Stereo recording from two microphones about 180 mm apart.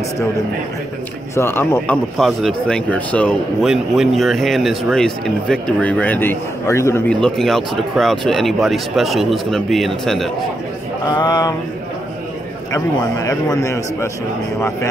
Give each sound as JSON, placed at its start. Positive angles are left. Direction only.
{"t": 1.3, "sound": "a man's voice", "side_deg": 15}
{"t": 2.1, "sound": "speech", "side_deg": 0}
{"t": 7.1, "sound": "speech", "side_deg": 5}
{"t": 11.1, "sound": "a sound", "side_deg": 20}
{"t": 12.7, "sound": "a man's voice", "side_deg": 15}